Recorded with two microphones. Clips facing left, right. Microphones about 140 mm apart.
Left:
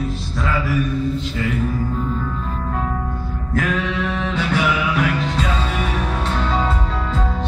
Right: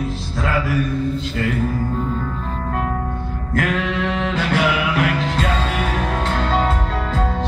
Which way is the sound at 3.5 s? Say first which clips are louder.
Right 1 dB; 70° right (ahead or behind).